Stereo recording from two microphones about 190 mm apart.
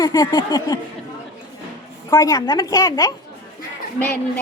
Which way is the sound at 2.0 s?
15° left (ahead or behind).